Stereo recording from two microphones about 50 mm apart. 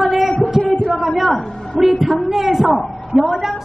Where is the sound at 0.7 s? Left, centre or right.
Centre.